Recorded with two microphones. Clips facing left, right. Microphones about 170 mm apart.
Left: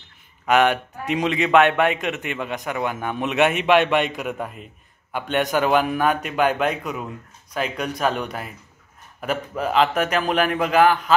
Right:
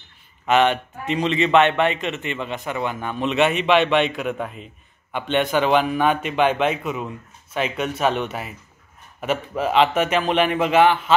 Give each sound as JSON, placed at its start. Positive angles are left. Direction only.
{"t": 0.5, "sound": "a man's voice", "side_deg": 10}